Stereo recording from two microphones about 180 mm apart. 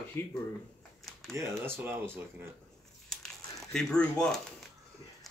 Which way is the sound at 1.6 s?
10° right (ahead or behind).